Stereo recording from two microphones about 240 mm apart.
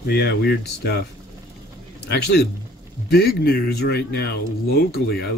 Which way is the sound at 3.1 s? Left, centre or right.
Left.